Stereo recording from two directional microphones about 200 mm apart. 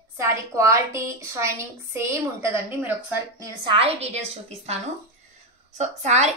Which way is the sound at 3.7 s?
30° right (ahead or behind).